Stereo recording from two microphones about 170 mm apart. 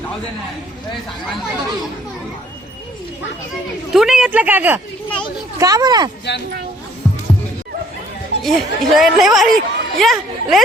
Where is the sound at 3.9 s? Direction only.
5° right (ahead or behind).